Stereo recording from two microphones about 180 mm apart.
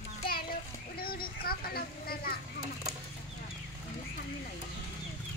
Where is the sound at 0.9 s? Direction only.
55° left (ahead or behind).